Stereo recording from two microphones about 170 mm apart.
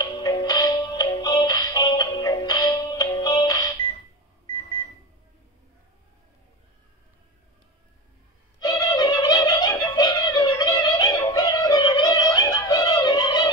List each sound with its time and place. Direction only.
0.0 s music: 20° left (ahead or behind)
4.6 s microwave oven: 30° left (ahead or behind)
8.5 s music: 20° left (ahead or behind)